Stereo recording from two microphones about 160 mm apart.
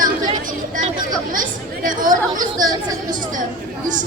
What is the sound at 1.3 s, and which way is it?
Speech, 55° right (ahead or behind).